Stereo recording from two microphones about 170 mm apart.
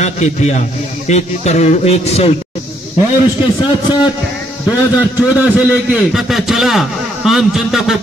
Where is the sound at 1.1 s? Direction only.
40° left (ahead or behind).